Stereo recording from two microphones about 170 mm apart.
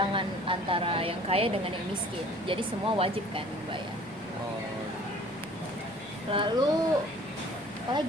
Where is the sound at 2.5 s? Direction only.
30° right (ahead or behind).